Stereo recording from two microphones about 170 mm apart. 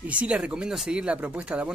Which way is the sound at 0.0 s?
10° right (ahead or behind).